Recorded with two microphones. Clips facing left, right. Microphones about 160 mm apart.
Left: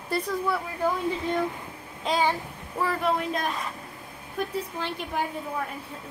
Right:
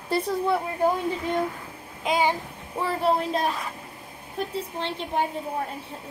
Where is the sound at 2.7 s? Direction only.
30° right (ahead or behind).